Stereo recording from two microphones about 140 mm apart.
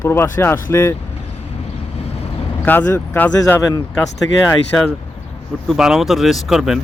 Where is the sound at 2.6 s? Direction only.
10° left (ahead or behind).